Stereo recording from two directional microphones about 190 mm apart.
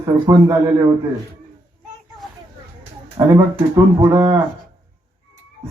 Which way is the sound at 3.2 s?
20° right (ahead or behind).